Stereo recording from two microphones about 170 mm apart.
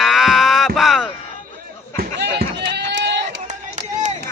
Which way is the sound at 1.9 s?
80° right.